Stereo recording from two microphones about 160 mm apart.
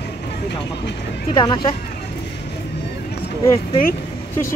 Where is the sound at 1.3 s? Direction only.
25° left (ahead or behind).